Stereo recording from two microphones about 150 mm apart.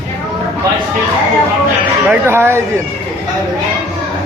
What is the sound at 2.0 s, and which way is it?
Speech, 15° right (ahead or behind).